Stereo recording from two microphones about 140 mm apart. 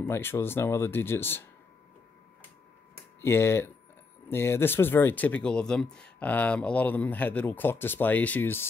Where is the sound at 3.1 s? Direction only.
15° left (ahead or behind).